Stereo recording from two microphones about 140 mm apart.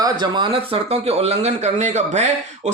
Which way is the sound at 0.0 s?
30° right (ahead or behind).